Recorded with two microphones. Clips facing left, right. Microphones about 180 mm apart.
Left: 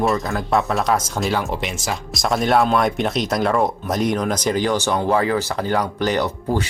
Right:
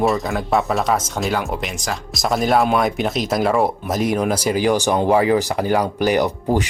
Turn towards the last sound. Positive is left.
turn(degrees=-15)  # may be behind; listen again after turning